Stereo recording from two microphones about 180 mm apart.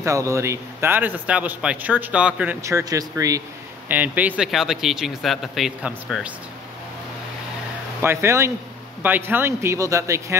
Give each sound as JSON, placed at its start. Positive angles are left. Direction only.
{"t": 0.0, "sound": "a man's voice", "side_deg": -15}
{"t": 2.6, "sound": "speech", "side_deg": -20}
{"t": 8.0, "sound": "a man's voice", "side_deg": -15}